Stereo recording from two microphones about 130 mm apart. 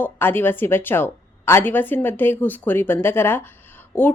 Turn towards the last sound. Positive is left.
turn(degrees=15)  # may be behind; listen again after turning